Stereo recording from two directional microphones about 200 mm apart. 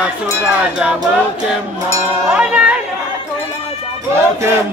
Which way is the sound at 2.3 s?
5° right (ahead or behind).